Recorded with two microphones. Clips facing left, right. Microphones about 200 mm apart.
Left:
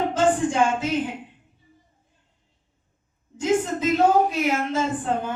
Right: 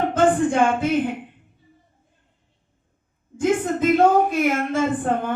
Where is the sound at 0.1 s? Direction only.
55° right (ahead or behind).